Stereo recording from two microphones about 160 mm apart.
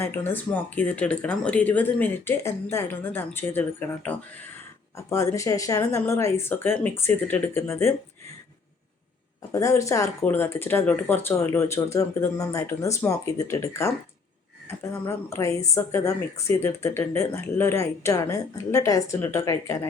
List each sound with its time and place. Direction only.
0.0 s speech: 15° left (ahead or behind)
9.5 s speech: 20° left (ahead or behind)
15.0 s speech: 15° left (ahead or behind)